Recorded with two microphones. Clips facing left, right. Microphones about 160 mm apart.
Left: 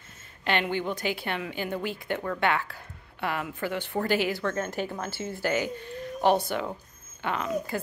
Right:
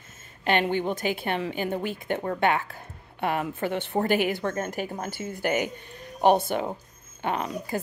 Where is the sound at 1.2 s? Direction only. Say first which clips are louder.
Right 4 dB; 25° right (ahead or behind).